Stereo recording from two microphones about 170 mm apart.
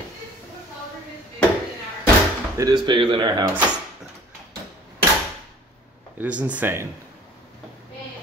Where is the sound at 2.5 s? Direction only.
25° right (ahead or behind).